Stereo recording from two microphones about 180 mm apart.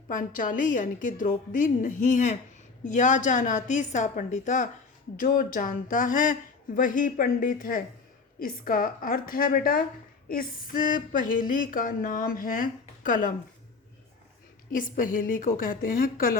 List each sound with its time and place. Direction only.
0.1 s speech: 45° left (ahead or behind)
14.7 s speech: 50° left (ahead or behind)